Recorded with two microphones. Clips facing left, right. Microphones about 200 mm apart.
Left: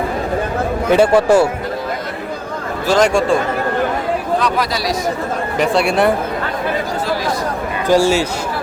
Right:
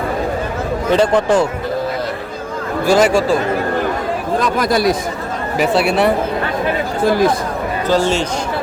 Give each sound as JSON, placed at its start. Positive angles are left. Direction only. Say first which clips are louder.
{"t": 0.9, "sound": "speech", "louder": "left 2 dB", "side_deg": 10}
{"t": 2.8, "sound": "speech", "louder": "right 1 dB", "side_deg": -5}
{"t": 4.4, "sound": "speech", "louder": "right 3 dB", "side_deg": -45}
{"t": 5.5, "sound": "speech", "louder": "right 1 dB", "side_deg": 0}
{"t": 7.0, "sound": "speech", "louder": "right 6 dB", "side_deg": -50}
{"t": 7.9, "sound": "speech", "louder": "left 3 dB", "side_deg": 10}